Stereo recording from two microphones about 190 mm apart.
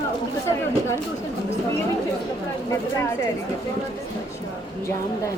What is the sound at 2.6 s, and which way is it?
Speech, 15° left (ahead or behind).